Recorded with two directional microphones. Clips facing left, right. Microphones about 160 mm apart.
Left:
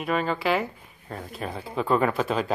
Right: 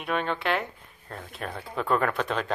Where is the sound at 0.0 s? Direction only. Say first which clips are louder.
Left 3 dB; centre (ahead or behind).